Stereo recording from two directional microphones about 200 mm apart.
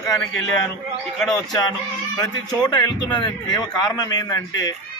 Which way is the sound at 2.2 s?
20° left (ahead or behind).